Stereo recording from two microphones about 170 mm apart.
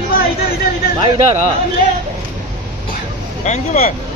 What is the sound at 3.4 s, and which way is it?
Speech, 45° left (ahead or behind).